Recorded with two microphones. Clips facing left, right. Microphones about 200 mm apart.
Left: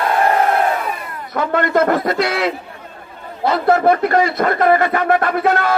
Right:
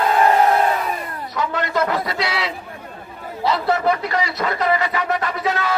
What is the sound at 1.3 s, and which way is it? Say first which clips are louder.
A man's voice: left 6 dB; 55° left (ahead or behind).